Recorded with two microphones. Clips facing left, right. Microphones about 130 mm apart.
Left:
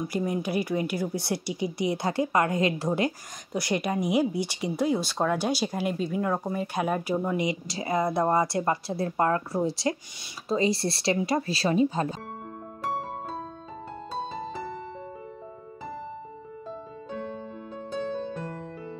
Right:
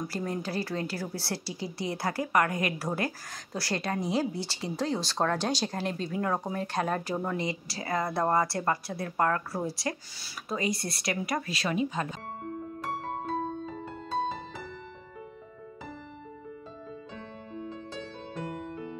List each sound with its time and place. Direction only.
0.1 s speech: 15° left (ahead or behind); by 12.2 s 35° left (ahead or behind)